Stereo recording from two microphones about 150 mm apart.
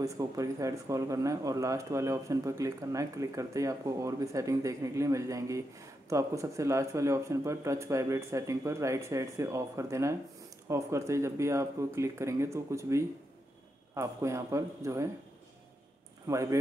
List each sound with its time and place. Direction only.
0.0 s speech: 20° right (ahead or behind)
16.3 s speech: 20° right (ahead or behind)